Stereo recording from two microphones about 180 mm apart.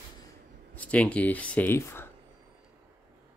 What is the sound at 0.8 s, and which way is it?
Speech, 5° left (ahead or behind).